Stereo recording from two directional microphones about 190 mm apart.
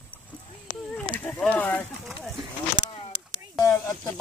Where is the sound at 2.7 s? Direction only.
30° left (ahead or behind).